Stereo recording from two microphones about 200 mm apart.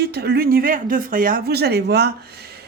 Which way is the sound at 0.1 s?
55° right (ahead or behind).